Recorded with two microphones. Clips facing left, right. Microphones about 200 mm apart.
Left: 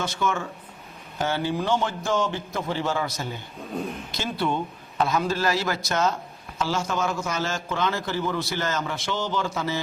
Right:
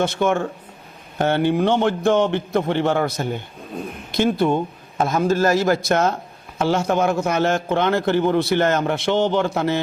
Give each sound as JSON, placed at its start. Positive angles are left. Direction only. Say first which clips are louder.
{"t": 0.0, "sound": "a man's voice", "louder": "right 8 dB", "side_deg": -55}